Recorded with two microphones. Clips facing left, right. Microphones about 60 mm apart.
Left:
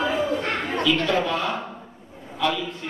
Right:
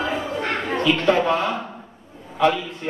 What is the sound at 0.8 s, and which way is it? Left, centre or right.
Speech, right.